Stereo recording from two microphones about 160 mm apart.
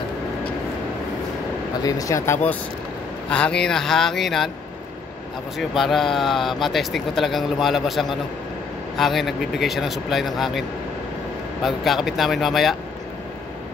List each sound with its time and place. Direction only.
1.8 s speech: 25° left (ahead or behind); by 4.5 s centre (ahead or behind)
5.6 s speech: centre (ahead or behind)
11.6 s speech: centre (ahead or behind)